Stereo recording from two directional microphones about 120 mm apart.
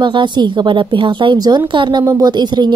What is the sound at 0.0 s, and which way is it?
A woman's voice, 40° right (ahead or behind).